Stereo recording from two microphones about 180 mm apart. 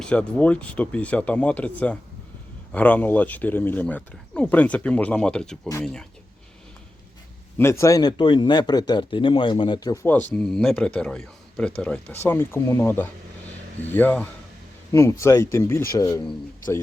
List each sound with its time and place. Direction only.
0.0 s speech: 5° left (ahead or behind)
7.6 s speech: 15° left (ahead or behind)
10.3 s speech: 5° left (ahead or behind); by 16.3 s 20° left (ahead or behind)